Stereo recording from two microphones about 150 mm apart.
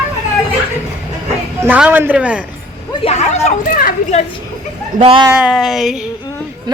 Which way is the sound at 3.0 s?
45° left (ahead or behind).